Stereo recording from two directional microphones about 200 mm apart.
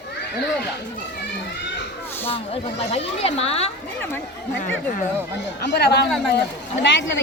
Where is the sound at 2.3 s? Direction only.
30° left (ahead or behind).